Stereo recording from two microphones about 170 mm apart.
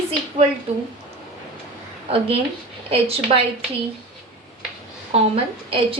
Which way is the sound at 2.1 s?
35° right (ahead or behind).